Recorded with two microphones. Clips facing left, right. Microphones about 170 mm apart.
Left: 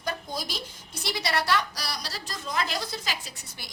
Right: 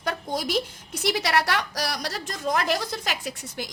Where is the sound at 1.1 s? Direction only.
70° right (ahead or behind).